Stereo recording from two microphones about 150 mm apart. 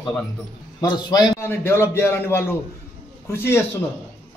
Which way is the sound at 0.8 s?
25° left (ahead or behind).